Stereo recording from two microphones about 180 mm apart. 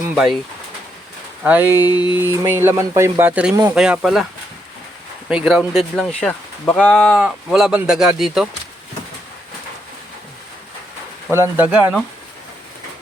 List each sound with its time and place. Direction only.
1.5 s speech: 10° right (ahead or behind)
1.9 s a sound: 25° left (ahead or behind)
2.1 s speech: 15° right (ahead or behind)
5.3 s speech: 5° right (ahead or behind)
11.3 s speech: 10° right (ahead or behind)